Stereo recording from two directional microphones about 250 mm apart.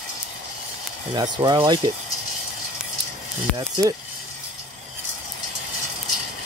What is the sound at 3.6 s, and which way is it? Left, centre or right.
Speech, centre.